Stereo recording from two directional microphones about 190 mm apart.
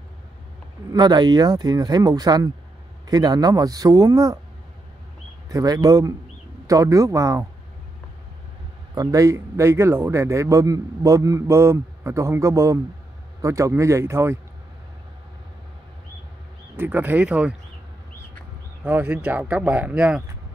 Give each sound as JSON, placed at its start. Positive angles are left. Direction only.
{"t": 0.9, "sound": "speech", "side_deg": -20}
{"t": 5.5, "sound": "a man's voice", "side_deg": -20}
{"t": 8.9, "sound": "a man's voice", "side_deg": -20}
{"t": 16.7, "sound": "a man's voice", "side_deg": -10}
{"t": 18.8, "sound": "a man's voice", "side_deg": -10}